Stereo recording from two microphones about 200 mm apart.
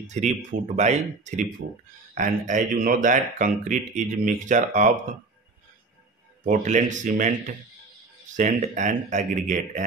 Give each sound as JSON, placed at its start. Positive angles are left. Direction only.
{"t": 0.0, "sound": "speech", "side_deg": -35}
{"t": 6.4, "sound": "speech", "side_deg": -40}